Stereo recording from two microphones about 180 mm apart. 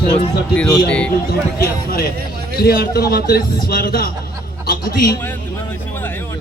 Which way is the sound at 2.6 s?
55° left (ahead or behind).